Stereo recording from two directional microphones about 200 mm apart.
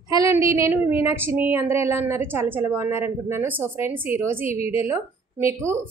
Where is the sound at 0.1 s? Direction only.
15° right (ahead or behind).